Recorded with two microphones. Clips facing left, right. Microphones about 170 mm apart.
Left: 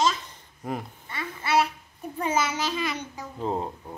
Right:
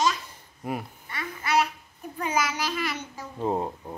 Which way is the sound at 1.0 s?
25° left (ahead or behind).